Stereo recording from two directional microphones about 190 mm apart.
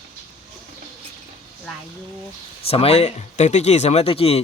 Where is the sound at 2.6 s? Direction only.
30° left (ahead or behind).